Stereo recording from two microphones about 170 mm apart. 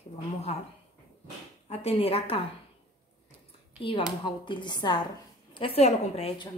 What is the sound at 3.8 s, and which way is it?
A woman's voice, 30° left (ahead or behind).